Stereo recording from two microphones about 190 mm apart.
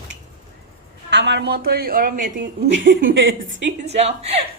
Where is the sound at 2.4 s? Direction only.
80° right.